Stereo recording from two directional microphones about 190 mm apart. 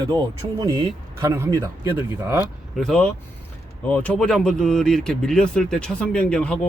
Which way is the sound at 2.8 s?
Centre (ahead or behind).